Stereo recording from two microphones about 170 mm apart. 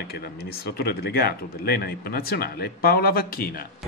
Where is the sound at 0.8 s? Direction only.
65° left (ahead or behind).